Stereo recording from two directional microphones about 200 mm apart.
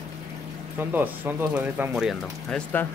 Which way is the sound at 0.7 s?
10° right (ahead or behind).